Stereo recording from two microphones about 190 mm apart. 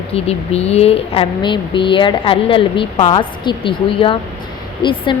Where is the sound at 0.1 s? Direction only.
30° left (ahead or behind).